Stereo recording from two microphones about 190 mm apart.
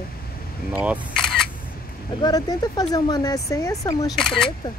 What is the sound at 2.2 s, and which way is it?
Speech, 20° left (ahead or behind).